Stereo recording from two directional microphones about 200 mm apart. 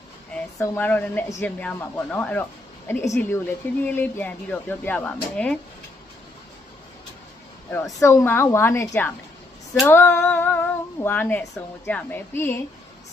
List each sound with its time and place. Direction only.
0.6 s speech: 10° left (ahead or behind)
7.7 s speech: 15° left (ahead or behind)